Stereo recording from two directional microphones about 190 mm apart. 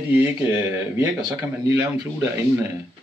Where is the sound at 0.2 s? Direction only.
10° right (ahead or behind).